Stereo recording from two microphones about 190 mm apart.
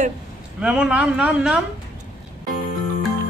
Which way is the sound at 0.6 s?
5° right (ahead or behind).